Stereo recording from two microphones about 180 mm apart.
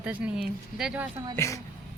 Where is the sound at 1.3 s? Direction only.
15° left (ahead or behind).